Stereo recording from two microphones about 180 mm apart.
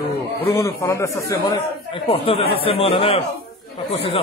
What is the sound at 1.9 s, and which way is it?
Speech, 30° left (ahead or behind).